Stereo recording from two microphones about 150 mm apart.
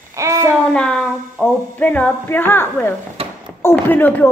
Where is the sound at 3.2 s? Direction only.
40° right (ahead or behind).